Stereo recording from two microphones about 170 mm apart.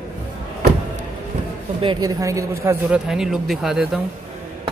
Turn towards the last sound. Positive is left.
turn(degrees=-5)  # may be behind; listen again after turning